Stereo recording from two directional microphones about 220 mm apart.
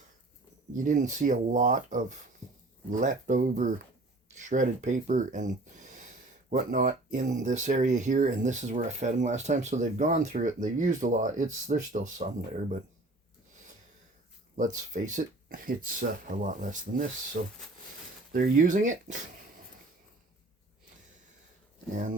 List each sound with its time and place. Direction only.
0.8 s speech: 35° right (ahead or behind)
14.5 s speech: 35° right (ahead or behind)